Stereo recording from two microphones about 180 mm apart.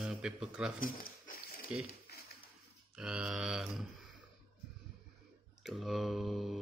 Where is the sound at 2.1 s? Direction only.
65° left (ahead or behind).